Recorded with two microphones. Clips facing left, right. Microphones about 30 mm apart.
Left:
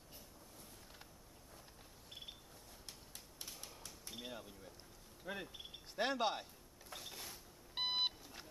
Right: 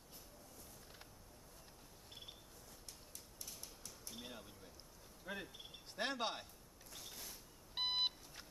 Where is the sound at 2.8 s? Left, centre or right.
Left.